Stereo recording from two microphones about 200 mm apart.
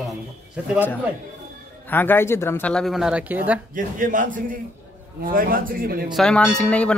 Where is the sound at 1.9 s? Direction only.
10° left (ahead or behind); by 3.6 s 10° right (ahead or behind).